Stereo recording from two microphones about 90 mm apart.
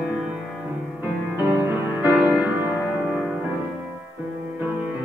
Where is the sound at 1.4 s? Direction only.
25° right (ahead or behind).